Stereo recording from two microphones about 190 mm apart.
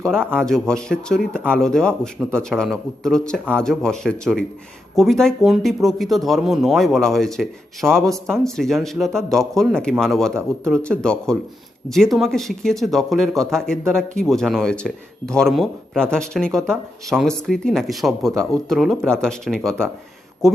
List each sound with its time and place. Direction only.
0.3 s speech: 5° left (ahead or behind)